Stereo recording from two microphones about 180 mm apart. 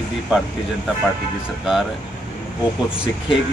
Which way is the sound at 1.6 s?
5° right (ahead or behind).